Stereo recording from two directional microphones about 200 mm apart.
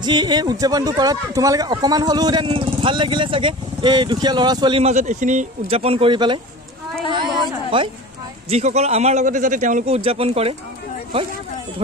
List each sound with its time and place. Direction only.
0.0 s a man's voice: 20° right (ahead or behind)